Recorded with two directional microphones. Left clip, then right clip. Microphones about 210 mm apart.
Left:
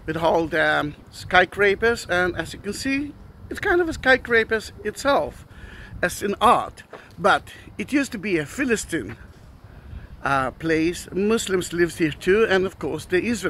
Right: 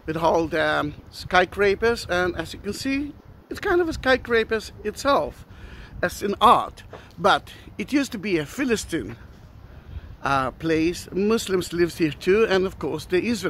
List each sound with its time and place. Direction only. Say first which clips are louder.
0.0 s speech: even; 5° right (ahead or behind)
10.2 s speech: left 1 dB; 5° right (ahead or behind)